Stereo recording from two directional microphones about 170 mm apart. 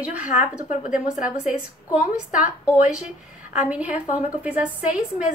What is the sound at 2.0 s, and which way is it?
Speech, 50° left (ahead or behind).